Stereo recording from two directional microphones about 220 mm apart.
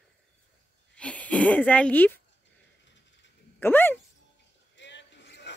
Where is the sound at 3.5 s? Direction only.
10° left (ahead or behind).